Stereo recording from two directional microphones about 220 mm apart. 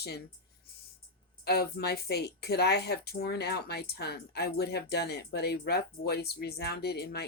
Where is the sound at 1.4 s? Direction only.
45° left (ahead or behind).